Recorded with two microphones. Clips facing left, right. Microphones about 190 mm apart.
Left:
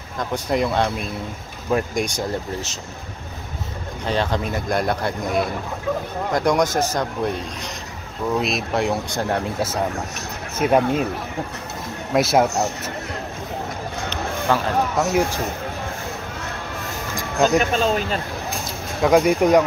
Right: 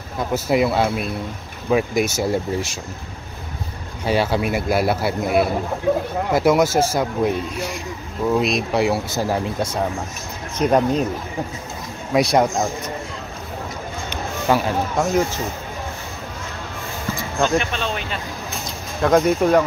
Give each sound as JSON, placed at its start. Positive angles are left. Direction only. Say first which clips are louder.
{"t": 0.2, "sound": "speech", "louder": "right 3 dB", "side_deg": -5}
{"t": 4.0, "sound": "speech", "louder": "right 3 dB", "side_deg": -10}
{"t": 12.1, "sound": "speech", "louder": "right 1 dB", "side_deg": 0}
{"t": 14.5, "sound": "speech", "louder": "right 3 dB", "side_deg": -10}
{"t": 15.0, "sound": "speech", "louder": "right 3 dB", "side_deg": 10}
{"t": 17.4, "sound": "speech", "louder": "left 3 dB", "side_deg": 40}
{"t": 19.0, "sound": "speech", "louder": "even", "side_deg": 10}